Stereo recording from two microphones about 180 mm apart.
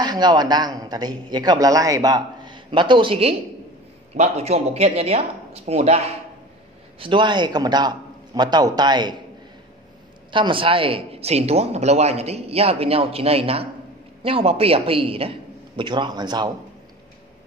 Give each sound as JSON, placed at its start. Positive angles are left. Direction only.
{"t": 0.0, "sound": "a man's voice", "side_deg": -25}
{"t": 10.3, "sound": "a man's voice", "side_deg": -30}